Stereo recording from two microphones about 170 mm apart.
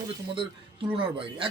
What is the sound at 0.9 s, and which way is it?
Speech, 30° right (ahead or behind).